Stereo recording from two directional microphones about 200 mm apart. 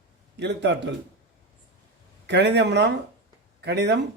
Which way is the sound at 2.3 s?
60° right (ahead or behind).